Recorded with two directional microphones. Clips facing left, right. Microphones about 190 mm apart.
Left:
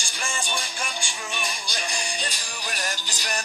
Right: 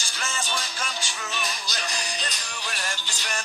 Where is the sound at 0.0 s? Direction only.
15° left (ahead or behind).